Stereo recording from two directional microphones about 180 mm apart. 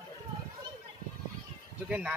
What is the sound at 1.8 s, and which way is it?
Speech, 5° right (ahead or behind).